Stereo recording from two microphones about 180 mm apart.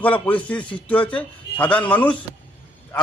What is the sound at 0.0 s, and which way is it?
A man's voice, 10° left (ahead or behind).